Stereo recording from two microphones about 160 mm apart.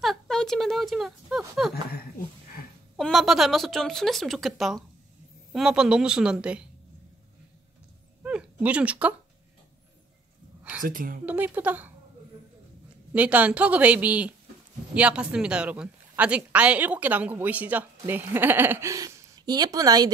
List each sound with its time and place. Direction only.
0.0 s a sound: centre (ahead or behind)
3.0 s speech: centre (ahead or behind)
8.2 s a sound: 5° right (ahead or behind)
10.8 s a woman's voice: 55° right (ahead or behind)
11.2 s speech: 10° right (ahead or behind)
13.1 s speech: 10° right (ahead or behind)